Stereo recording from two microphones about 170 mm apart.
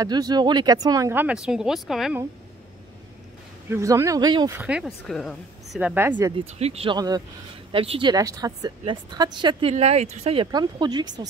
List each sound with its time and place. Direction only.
0.0 s speech: 25° right (ahead or behind); by 2.1 s centre (ahead or behind)
3.7 s speech: 20° right (ahead or behind)
4.6 s speech: 5° right (ahead or behind)
5.8 s speech: 10° right (ahead or behind)
6.3 s speech: 35° right (ahead or behind)
7.0 s speech: 20° right (ahead or behind)